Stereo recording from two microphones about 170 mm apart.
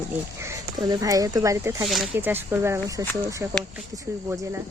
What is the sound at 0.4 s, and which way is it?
Speech, 20° right (ahead or behind).